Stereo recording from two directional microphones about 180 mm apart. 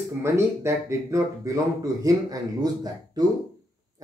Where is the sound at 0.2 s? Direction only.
15° right (ahead or behind).